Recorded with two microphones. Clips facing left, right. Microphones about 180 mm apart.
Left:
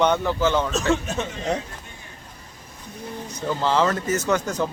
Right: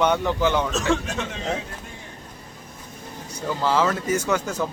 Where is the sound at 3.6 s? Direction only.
5° right (ahead or behind).